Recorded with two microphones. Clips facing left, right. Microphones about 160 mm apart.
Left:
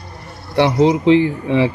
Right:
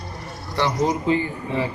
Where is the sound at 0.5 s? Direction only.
70° left (ahead or behind).